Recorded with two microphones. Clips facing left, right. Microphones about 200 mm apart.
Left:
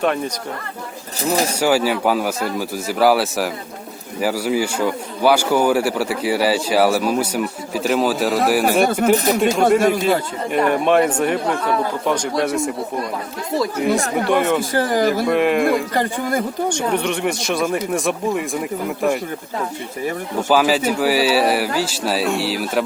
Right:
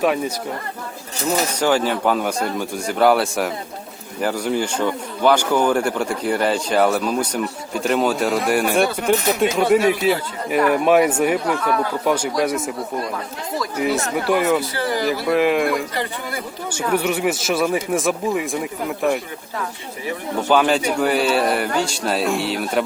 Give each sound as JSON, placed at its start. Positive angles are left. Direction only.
{"t": 0.0, "sound": "speech", "side_deg": -5}
{"t": 1.2, "sound": "speech", "side_deg": 35}
{"t": 1.5, "sound": "a man's voice", "side_deg": 10}
{"t": 9.1, "sound": "speech", "side_deg": 35}
{"t": 9.6, "sound": "speech", "side_deg": 50}
{"t": 10.7, "sound": "speech", "side_deg": -5}
{"t": 11.6, "sound": "speech", "side_deg": 25}
{"t": 12.0, "sound": "speech", "side_deg": -5}
{"t": 14.3, "sound": "speech", "side_deg": -5}
{"t": 14.6, "sound": "speech", "side_deg": 50}
{"t": 15.3, "sound": "speech", "side_deg": 0}
{"t": 16.0, "sound": "speech", "side_deg": 45}
{"t": 16.6, "sound": "speech", "side_deg": -5}
{"t": 20.5, "sound": "speech", "side_deg": 5}